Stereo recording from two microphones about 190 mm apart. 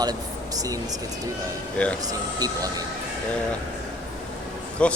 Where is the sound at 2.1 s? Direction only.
20° right (ahead or behind).